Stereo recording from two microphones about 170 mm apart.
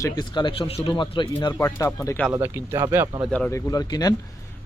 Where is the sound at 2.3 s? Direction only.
15° right (ahead or behind).